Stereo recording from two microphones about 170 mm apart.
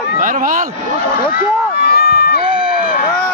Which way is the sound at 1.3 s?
60° left (ahead or behind).